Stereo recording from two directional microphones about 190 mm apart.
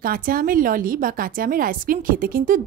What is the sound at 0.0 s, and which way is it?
A woman's voice, 50° right (ahead or behind).